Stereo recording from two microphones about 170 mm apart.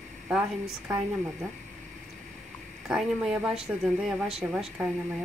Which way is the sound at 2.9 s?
Centre (ahead or behind).